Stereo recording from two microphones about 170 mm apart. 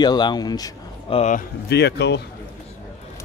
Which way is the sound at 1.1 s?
45° left (ahead or behind).